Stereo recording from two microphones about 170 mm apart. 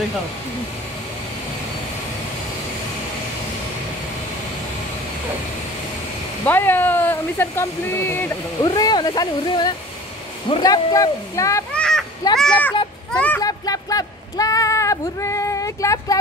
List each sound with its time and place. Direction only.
6.4 s speech: 10° left (ahead or behind)
8.6 s speech: 25° left (ahead or behind)
11.7 s a sound: 5° left (ahead or behind)
12.4 s speech: 5° left (ahead or behind)
13.4 s speech: 20° left (ahead or behind)